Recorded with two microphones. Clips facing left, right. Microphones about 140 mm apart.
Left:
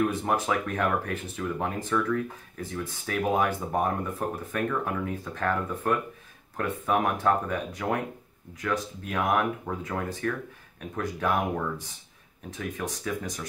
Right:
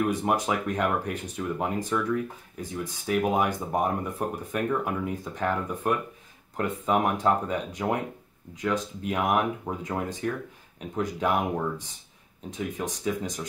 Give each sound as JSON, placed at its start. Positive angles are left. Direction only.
{"t": 0.1, "sound": "speech", "side_deg": -15}